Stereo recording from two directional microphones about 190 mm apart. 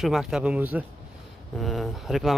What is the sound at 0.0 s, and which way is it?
Speech, centre (ahead or behind).